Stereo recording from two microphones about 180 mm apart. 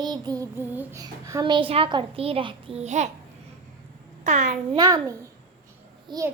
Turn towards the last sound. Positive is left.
turn(degrees=-25)  # may be behind; listen again after turning